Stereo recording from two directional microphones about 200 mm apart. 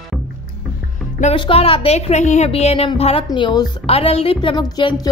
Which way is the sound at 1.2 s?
30° left (ahead or behind).